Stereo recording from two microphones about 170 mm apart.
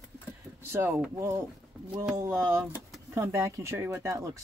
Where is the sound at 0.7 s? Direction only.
15° right (ahead or behind).